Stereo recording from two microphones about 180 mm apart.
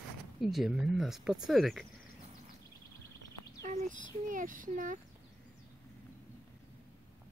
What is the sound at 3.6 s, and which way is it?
Speech, 45° right (ahead or behind).